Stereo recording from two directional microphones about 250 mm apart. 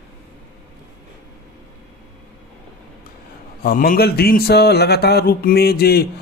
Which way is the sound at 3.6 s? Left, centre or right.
Left.